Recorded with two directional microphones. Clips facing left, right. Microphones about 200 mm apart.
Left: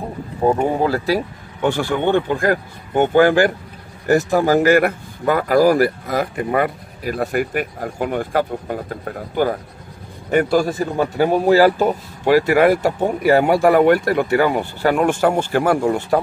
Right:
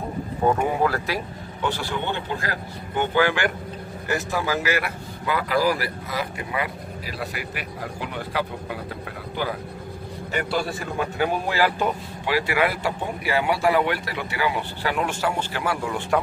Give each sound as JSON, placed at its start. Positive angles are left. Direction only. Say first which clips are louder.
{"t": 0.4, "sound": "speech", "louder": "left 4 dB", "side_deg": 30}
{"t": 1.6, "sound": "a man's voice", "louder": "left 8 dB", "side_deg": 50}